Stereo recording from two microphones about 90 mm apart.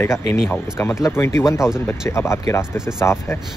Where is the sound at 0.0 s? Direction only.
30° left (ahead or behind).